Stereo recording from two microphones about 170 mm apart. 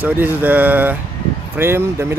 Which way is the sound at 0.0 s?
10° right (ahead or behind).